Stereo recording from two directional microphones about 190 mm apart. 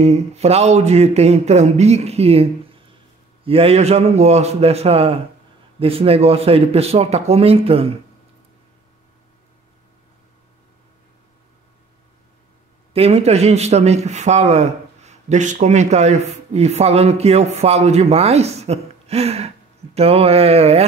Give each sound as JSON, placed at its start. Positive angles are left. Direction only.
{"t": 0.0, "sound": "a man's voice", "side_deg": -35}
{"t": 3.4, "sound": "a man's voice", "side_deg": -30}
{"t": 12.9, "sound": "a man's voice", "side_deg": -35}